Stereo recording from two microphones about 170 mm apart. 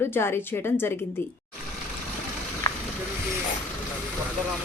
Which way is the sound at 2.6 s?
20° left (ahead or behind).